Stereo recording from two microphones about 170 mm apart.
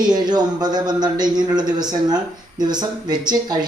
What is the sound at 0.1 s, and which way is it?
Speech, 25° right (ahead or behind).